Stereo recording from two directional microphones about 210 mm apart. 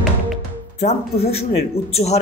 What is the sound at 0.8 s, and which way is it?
Speech, 30° left (ahead or behind).